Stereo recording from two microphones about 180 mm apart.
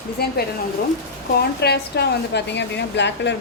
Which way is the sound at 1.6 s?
65° left (ahead or behind).